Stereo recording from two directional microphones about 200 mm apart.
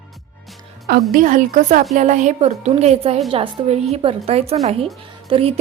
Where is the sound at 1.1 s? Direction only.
40° right (ahead or behind).